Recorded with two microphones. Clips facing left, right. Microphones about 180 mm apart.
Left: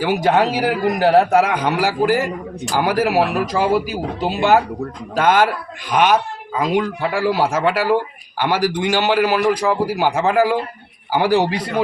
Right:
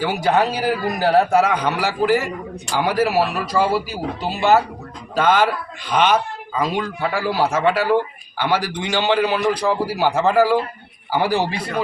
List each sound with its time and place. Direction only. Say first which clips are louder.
0.0 s a man's voice: left 2 dB; 15° left (ahead or behind)